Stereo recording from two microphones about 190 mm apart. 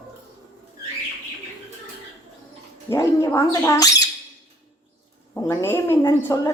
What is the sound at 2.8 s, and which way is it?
A woman's voice, 15° left (ahead or behind).